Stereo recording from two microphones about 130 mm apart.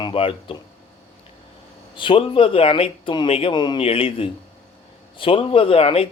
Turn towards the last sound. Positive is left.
turn(degrees=45)  # may be behind; listen again after turning